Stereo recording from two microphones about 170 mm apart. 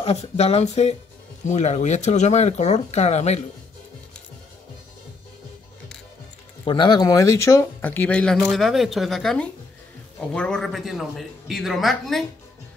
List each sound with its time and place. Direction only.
0.0 s speech: 40° left (ahead or behind)
6.6 s speech: 30° left (ahead or behind); by 12.3 s centre (ahead or behind)